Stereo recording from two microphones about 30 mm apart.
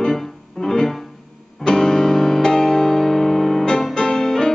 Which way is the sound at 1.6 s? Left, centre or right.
Left.